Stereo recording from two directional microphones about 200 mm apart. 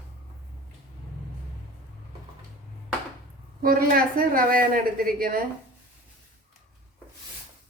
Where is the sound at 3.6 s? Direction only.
45° right (ahead or behind).